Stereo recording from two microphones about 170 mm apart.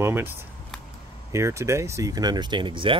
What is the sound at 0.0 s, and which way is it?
Speech, 15° right (ahead or behind).